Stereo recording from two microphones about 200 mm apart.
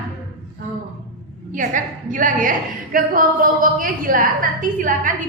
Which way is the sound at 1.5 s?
40° right (ahead or behind).